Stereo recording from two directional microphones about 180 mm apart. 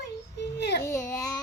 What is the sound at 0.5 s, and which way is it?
Speech, 70° left (ahead or behind).